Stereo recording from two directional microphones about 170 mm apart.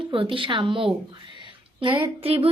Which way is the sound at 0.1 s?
30° right (ahead or behind).